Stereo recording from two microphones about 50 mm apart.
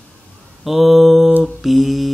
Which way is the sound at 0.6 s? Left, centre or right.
Centre.